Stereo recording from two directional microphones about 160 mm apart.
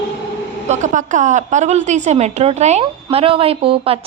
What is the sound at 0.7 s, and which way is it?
A woman's voice, 50° right (ahead or behind).